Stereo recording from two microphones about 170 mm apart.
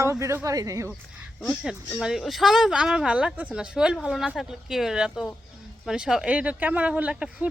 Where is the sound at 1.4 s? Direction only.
5° left (ahead or behind).